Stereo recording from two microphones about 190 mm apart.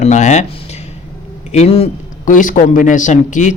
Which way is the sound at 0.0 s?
40° left (ahead or behind).